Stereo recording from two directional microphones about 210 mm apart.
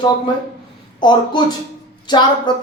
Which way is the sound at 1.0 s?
20° left (ahead or behind).